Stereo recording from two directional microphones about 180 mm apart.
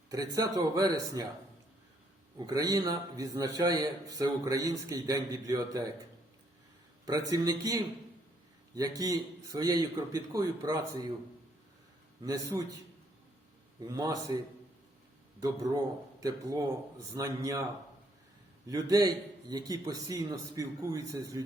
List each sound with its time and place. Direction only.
0.1 s a man's voice: 20° right (ahead or behind)
2.5 s a man's voice: 20° right (ahead or behind)
7.0 s a man's voice: 20° right (ahead or behind)
12.2 s a man's voice: 20° right (ahead or behind)
13.8 s a man's voice: 20° right (ahead or behind)
18.7 s a man's voice: 20° right (ahead or behind)